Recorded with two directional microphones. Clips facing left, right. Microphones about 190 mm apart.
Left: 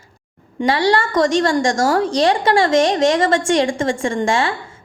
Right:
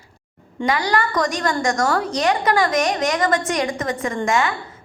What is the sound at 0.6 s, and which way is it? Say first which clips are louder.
A woman's voice: left 4 dB; 30° left (ahead or behind).